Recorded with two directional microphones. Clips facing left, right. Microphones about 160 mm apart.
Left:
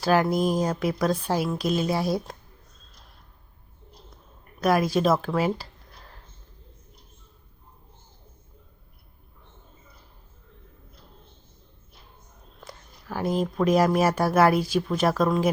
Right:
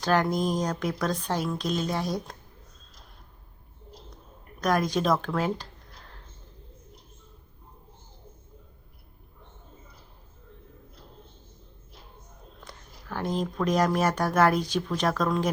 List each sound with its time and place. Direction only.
0.0 s speech: 5° left (ahead or behind)
4.6 s speech: 5° left (ahead or behind)
12.5 s speech: 5° left (ahead or behind)